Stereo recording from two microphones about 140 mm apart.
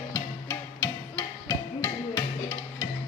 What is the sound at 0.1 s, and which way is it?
Music, 20° left (ahead or behind).